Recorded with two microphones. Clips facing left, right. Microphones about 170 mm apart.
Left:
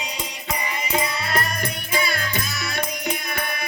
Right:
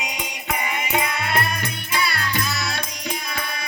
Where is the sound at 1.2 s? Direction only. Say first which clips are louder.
Right 1 dB; 40° left (ahead or behind).